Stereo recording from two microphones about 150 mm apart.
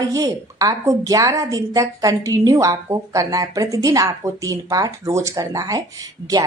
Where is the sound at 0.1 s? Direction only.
25° right (ahead or behind).